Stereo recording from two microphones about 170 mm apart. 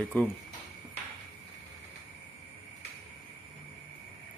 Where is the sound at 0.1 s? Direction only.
5° left (ahead or behind).